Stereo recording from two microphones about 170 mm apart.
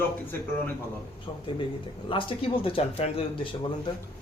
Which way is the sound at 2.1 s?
30° left (ahead or behind).